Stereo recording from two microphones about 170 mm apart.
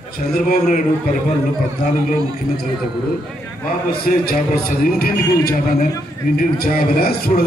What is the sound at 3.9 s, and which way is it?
A man's voice, 60° left (ahead or behind).